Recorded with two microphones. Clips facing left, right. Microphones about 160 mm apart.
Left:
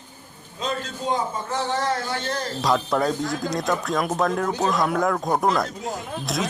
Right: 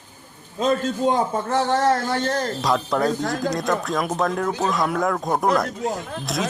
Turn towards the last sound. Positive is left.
turn(degrees=0)  # may be behind; listen again after turning